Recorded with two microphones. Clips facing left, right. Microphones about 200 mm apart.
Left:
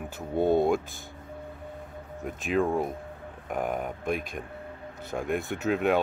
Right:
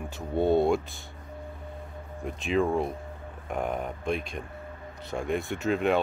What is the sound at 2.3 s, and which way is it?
Speech, centre (ahead or behind).